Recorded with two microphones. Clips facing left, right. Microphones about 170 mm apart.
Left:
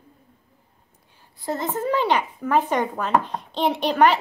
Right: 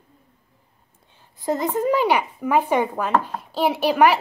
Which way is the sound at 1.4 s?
20° right (ahead or behind).